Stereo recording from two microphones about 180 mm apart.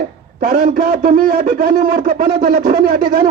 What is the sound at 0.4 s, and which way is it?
A man's voice, 55° right (ahead or behind).